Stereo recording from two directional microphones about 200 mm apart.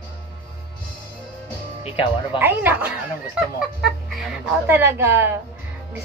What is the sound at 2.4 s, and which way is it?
A woman's voice, 10° right (ahead or behind).